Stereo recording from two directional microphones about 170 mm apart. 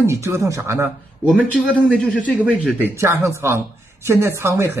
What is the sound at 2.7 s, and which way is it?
A man's voice, 15° right (ahead or behind).